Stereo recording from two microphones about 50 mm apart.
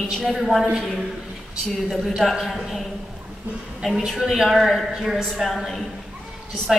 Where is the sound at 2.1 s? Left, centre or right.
Centre.